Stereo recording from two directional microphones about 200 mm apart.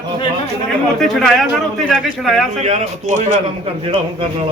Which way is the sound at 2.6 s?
35° right (ahead or behind).